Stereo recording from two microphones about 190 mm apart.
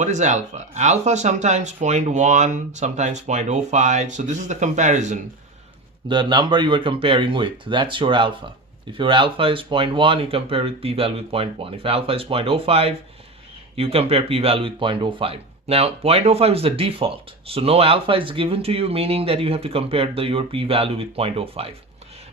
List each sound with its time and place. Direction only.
0.0 s speech: 40° right (ahead or behind)
6.1 s speech: 25° right (ahead or behind)